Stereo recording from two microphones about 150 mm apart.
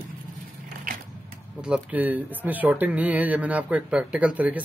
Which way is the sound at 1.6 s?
10° right (ahead or behind).